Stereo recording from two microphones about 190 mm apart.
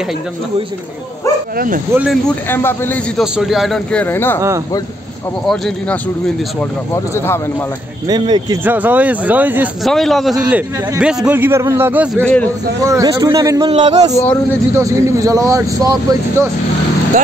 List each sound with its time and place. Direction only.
1.9 s a man's voice: 5° right (ahead or behind)
2.5 s speech: 10° left (ahead or behind)
3.2 s a man's voice: centre (ahead or behind)
5.5 s a man's voice: centre (ahead or behind)
8.1 s a man's voice: 20° right (ahead or behind)
8.6 s a man's voice: 10° right (ahead or behind)
12.2 s speech: 5° left (ahead or behind)
12.8 s a man's voice: 20° right (ahead or behind)
14.8 s a man's voice: 15° right (ahead or behind)